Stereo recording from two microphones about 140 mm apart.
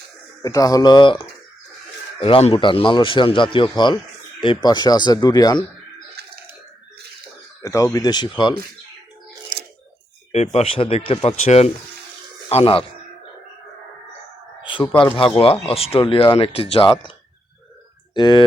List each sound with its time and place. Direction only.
0.4 s speech: 25° left (ahead or behind)
7.6 s speech: 25° left (ahead or behind)
10.3 s speech: 50° left (ahead or behind)
14.8 s a man's voice: 15° left (ahead or behind)
15.1 s speech: 40° left (ahead or behind)
18.1 s speech: 35° left (ahead or behind)